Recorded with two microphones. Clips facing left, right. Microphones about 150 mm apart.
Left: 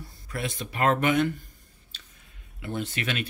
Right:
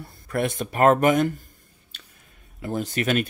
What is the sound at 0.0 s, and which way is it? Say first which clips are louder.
Speech: right 8 dB; 55° right (ahead or behind).